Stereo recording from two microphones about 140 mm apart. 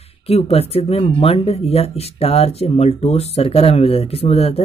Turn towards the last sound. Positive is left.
turn(degrees=45)  # may be behind; listen again after turning